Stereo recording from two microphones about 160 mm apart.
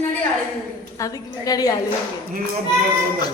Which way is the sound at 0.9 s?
20° left (ahead or behind).